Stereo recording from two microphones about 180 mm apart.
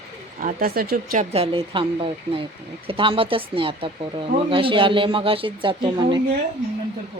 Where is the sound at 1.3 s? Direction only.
30° right (ahead or behind).